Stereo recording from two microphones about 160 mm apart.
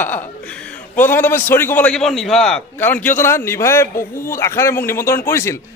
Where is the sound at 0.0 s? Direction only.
10° left (ahead or behind).